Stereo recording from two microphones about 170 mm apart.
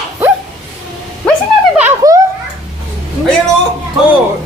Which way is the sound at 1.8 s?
15° right (ahead or behind).